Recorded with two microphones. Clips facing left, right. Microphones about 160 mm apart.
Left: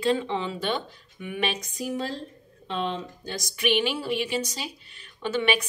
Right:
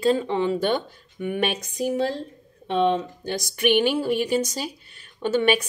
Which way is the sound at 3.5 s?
50° right (ahead or behind).